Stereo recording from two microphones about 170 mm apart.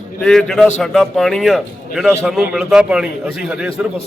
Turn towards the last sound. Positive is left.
turn(degrees=-5)  # may be behind; listen again after turning